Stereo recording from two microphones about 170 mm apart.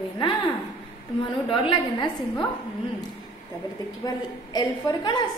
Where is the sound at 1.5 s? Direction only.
30° left (ahead or behind).